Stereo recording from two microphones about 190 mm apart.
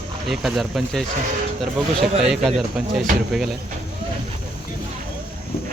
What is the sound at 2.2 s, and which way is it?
Speech, centre (ahead or behind).